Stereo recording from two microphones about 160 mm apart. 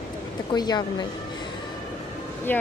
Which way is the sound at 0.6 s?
25° left (ahead or behind).